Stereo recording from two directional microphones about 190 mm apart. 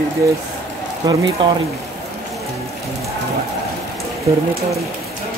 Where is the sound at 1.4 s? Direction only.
25° right (ahead or behind).